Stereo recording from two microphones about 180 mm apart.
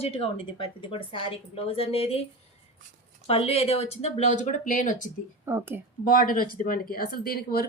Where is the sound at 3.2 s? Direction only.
30° left (ahead or behind).